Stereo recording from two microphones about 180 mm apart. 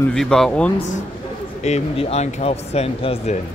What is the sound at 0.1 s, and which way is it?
Speech, 5° left (ahead or behind).